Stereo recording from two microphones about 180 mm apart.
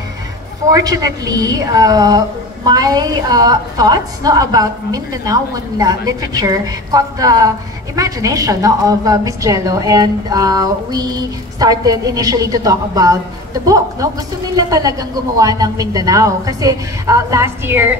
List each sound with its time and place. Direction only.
0.7 s a woman's voice: 20° right (ahead or behind)